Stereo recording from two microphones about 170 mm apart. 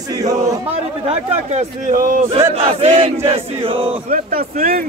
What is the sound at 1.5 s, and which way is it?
Chant, 40° right (ahead or behind).